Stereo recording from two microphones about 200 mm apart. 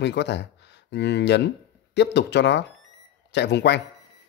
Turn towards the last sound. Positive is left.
turn(degrees=60)  # may be behind; listen again after turning